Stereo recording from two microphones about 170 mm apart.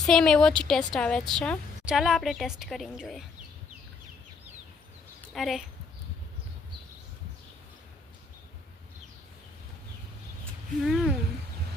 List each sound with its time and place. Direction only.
0.0 s a woman's voice: 5° left (ahead or behind)
5.3 s a woman's voice: centre (ahead or behind)
10.8 s a woman's voice: centre (ahead or behind)